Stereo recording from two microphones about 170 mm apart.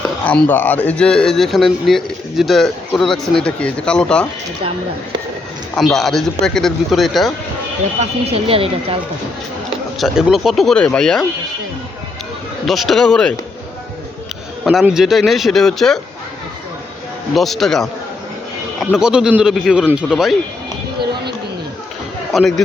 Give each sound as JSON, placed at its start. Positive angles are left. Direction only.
{"t": 0.3, "sound": "speech", "side_deg": 10}
{"t": 5.7, "sound": "speech", "side_deg": 0}
{"t": 8.3, "sound": "speech", "side_deg": -35}
{"t": 10.0, "sound": "speech", "side_deg": 0}
{"t": 12.6, "sound": "speech", "side_deg": 0}
{"t": 14.6, "sound": "speech", "side_deg": 0}
{"t": 17.3, "sound": "speech", "side_deg": 0}
{"t": 18.9, "sound": "speech", "side_deg": -5}
{"t": 22.3, "sound": "speech", "side_deg": 0}